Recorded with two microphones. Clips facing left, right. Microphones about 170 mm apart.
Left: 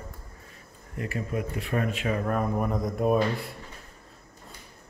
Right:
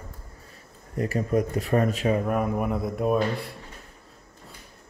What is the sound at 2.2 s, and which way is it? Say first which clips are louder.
Speech: right 2 dB; 10° right (ahead or behind).